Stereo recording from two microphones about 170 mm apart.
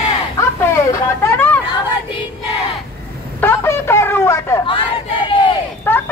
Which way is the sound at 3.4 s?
15° left (ahead or behind).